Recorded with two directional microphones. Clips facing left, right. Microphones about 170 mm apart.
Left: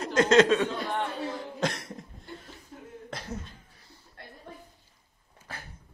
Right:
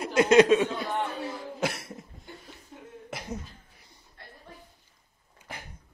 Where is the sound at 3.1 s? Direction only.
15° right (ahead or behind).